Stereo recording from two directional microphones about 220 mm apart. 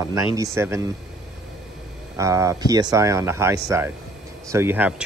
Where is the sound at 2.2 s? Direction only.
15° right (ahead or behind).